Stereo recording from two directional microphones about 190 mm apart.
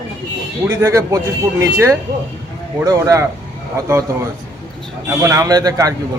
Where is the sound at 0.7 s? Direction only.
15° right (ahead or behind).